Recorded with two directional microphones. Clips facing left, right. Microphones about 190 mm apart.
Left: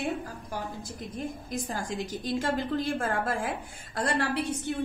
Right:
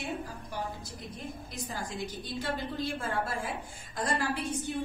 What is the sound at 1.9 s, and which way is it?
Speech, 90° left.